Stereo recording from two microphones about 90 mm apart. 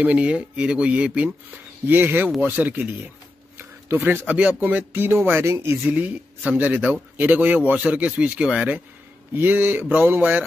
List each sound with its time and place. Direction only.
0.0 s speech: 15° right (ahead or behind)
5.9 s speech: 20° right (ahead or behind)